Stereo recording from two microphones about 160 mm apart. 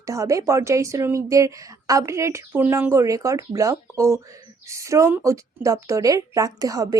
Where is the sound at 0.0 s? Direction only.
20° right (ahead or behind).